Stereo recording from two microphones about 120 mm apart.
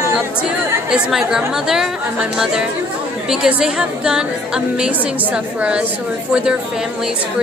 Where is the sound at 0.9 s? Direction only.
5° right (ahead or behind).